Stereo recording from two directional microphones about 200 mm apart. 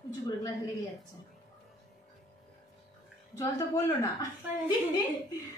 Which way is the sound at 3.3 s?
15° left (ahead or behind).